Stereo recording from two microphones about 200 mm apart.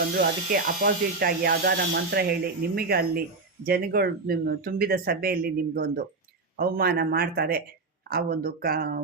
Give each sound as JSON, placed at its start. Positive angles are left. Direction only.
{"t": 0.2, "sound": "speech", "side_deg": -45}